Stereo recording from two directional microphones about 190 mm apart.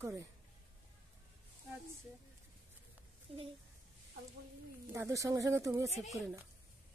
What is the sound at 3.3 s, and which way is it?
Speech, 30° right (ahead or behind).